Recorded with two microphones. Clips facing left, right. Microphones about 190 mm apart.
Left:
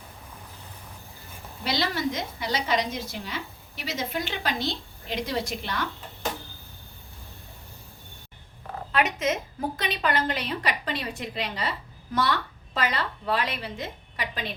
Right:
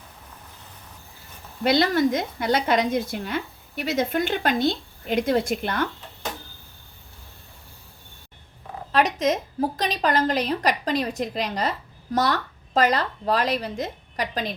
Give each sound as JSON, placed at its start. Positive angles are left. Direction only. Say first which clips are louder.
{"t": 1.6, "sound": "a woman's voice", "louder": "right 8 dB", "side_deg": -50}
{"t": 8.9, "sound": "a woman's voice", "louder": "right 4 dB", "side_deg": -35}